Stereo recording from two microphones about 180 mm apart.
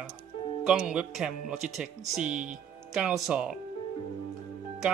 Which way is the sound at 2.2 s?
45° right (ahead or behind).